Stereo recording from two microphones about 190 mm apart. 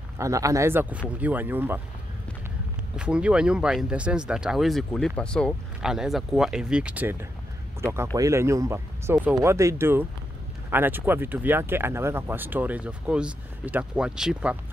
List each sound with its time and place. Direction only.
0.2 s speech: 15° right (ahead or behind)
3.0 s speech: 5° right (ahead or behind)